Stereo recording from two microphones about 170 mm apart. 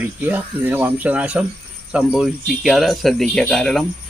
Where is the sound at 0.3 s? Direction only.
10° right (ahead or behind).